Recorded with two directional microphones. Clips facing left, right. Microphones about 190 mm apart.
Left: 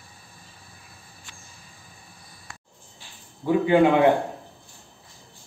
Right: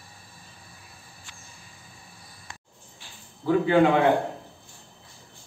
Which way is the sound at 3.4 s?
20° left (ahead or behind).